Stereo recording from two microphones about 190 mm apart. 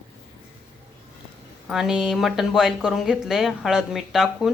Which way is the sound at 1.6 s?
5° right (ahead or behind).